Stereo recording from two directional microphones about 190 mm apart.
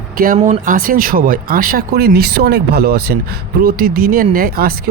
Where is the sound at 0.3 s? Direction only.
45° right (ahead or behind).